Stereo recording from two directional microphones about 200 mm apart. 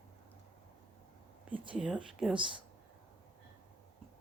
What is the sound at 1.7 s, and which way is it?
Speech, 5° right (ahead or behind).